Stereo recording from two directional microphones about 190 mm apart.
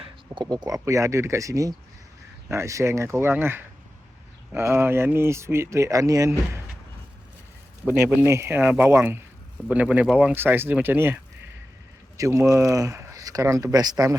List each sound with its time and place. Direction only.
0.4 s speech: 20° right (ahead or behind)
7.9 s speech: 10° right (ahead or behind)